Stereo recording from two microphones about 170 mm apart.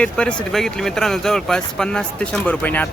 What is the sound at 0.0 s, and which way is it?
Speech, 5° left (ahead or behind).